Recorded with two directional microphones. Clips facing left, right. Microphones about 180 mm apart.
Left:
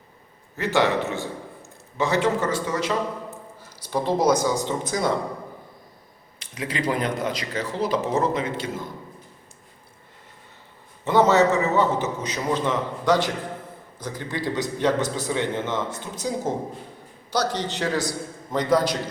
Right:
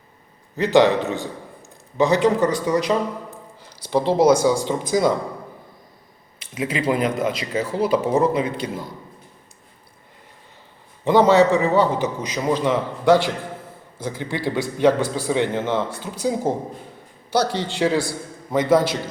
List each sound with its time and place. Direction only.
0.5 s a man's voice: 15° right (ahead or behind)
6.5 s a man's voice: 10° right (ahead or behind)
11.0 s a man's voice: 15° right (ahead or behind)